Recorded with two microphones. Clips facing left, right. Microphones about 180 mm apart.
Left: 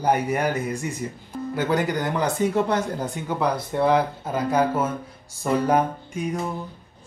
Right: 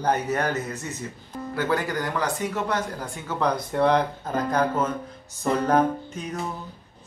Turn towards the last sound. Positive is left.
turn(degrees=10)  # may be behind; listen again after turning